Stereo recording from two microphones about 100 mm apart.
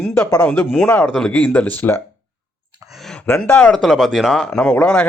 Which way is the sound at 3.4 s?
10° left (ahead or behind).